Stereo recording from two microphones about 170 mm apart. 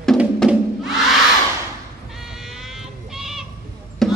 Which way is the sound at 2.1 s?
Centre (ahead or behind).